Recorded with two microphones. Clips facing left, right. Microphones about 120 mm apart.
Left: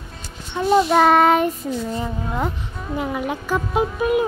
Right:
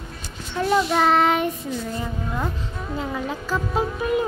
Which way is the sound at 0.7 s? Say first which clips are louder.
Left 5 dB; 50° left (ahead or behind).